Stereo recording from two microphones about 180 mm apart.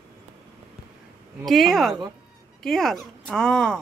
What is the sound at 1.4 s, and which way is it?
Speech, centre (ahead or behind).